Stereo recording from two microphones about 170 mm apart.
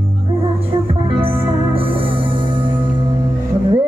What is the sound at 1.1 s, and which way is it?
Music, 30° right (ahead or behind).